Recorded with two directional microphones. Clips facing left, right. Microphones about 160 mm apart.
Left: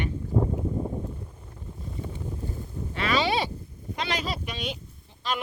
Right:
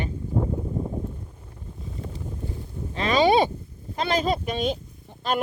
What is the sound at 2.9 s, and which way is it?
Speech, 35° right (ahead or behind).